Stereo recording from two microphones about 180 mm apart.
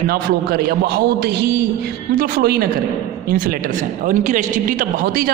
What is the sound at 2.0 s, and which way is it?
A woman's voice, 50° right (ahead or behind).